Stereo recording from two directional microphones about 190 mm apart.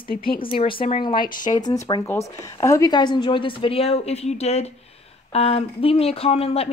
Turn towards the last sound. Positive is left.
turn(degrees=30)  # may be behind; listen again after turning